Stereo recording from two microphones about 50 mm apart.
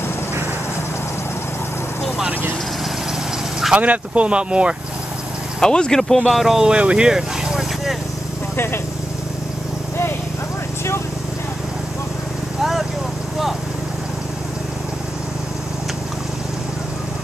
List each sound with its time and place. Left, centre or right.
3.7 s speech: right
5.6 s speech: centre
6.7 s speech: right
7.1 s vehicle: centre